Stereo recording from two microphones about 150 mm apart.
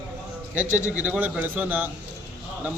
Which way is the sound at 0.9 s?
10° right (ahead or behind).